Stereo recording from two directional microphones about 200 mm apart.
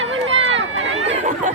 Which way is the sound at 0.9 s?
30° right (ahead or behind).